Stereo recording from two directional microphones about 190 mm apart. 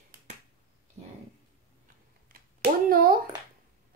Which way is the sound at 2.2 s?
50° right (ahead or behind).